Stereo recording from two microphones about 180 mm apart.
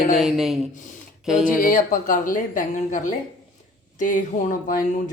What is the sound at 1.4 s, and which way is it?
A woman's voice, 50° left (ahead or behind).